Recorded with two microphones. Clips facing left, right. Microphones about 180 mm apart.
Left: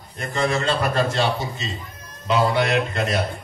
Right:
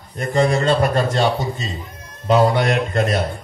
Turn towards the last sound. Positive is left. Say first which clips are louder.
# right 4 dB
turn(degrees=-50)  # may be behind; listen again after turning